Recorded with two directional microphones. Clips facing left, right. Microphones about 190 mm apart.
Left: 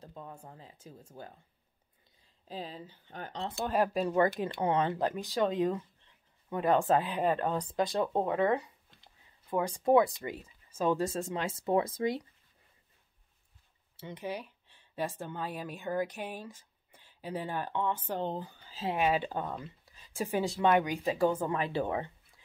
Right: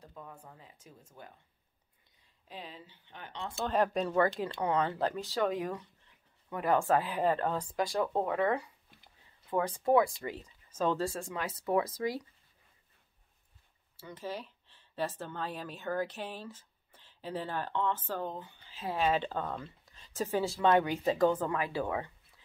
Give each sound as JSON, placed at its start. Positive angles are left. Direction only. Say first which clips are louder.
{"t": 0.0, "sound": "speech", "louder": "left 3 dB", "side_deg": 25}
{"t": 2.4, "sound": "speech", "louder": "left 5 dB", "side_deg": 35}
{"t": 3.6, "sound": "a woman's voice", "louder": "even", "side_deg": 10}
{"t": 4.1, "sound": "speech", "louder": "left 1 dB", "side_deg": 20}
{"t": 13.9, "sound": "speech", "louder": "left 2 dB", "side_deg": 20}
{"t": 18.2, "sound": "speech", "louder": "left 4 dB", "side_deg": 35}
{"t": 18.9, "sound": "a woman's voice", "louder": "left 1 dB", "side_deg": 15}
{"t": 21.5, "sound": "speech", "louder": "left 2 dB", "side_deg": 25}